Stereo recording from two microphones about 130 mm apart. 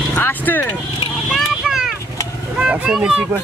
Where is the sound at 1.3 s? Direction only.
5° right (ahead or behind).